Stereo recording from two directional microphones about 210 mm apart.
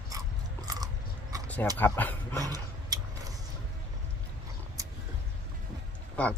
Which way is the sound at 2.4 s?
20° right (ahead or behind).